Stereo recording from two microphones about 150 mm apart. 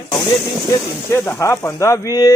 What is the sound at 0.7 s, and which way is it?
Speech, 15° left (ahead or behind).